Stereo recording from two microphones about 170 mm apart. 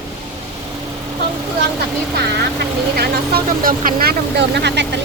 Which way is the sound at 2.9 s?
60° right (ahead or behind).